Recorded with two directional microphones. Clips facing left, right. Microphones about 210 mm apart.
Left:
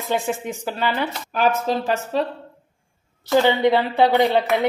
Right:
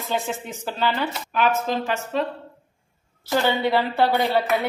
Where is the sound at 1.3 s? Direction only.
40° left (ahead or behind).